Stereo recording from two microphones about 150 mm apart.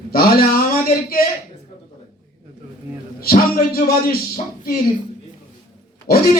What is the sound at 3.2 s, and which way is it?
Speech, 90° left.